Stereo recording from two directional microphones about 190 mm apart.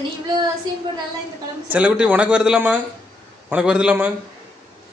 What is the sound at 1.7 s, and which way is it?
A man's voice, 5° right (ahead or behind).